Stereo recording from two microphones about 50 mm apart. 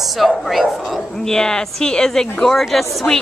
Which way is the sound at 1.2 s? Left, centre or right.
Centre.